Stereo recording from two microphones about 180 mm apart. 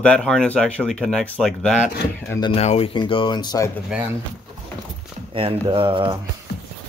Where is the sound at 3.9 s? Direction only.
5° right (ahead or behind).